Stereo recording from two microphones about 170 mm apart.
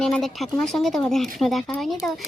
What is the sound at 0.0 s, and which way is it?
Speech, centre (ahead or behind).